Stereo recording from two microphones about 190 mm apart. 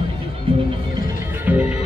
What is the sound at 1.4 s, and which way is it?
Music, 5° right (ahead or behind).